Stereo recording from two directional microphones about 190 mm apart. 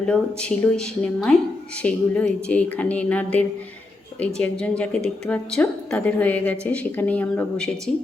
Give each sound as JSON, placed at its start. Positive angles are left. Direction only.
{"t": 0.0, "sound": "a woman's voice", "side_deg": 5}